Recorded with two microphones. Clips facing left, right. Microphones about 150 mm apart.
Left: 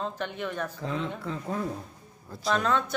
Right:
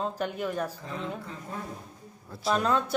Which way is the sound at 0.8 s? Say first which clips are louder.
Left 6 dB; 90° left.